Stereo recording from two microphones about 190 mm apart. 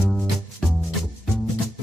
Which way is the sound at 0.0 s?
Centre (ahead or behind).